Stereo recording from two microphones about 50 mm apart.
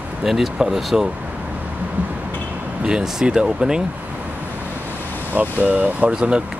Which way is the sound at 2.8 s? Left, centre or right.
Centre.